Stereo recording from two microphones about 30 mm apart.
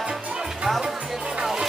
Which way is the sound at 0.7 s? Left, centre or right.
Centre.